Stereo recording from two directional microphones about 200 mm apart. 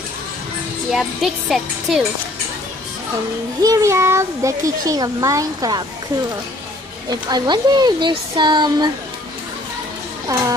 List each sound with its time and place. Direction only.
0.9 s speech: centre (ahead or behind)
3.6 s a child's voice: 15° right (ahead or behind)
7.1 s speech: 20° right (ahead or behind)
10.3 s a child's voice: 15° right (ahead or behind)